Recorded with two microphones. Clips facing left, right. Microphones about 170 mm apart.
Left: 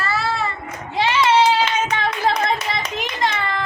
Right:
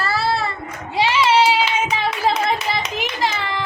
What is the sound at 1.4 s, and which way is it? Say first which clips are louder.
Clapping: even; 10° right (ahead or behind).